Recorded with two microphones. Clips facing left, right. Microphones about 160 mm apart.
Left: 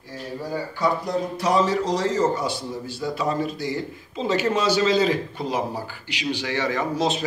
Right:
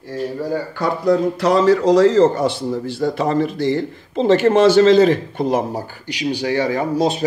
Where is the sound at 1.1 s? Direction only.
70° right (ahead or behind).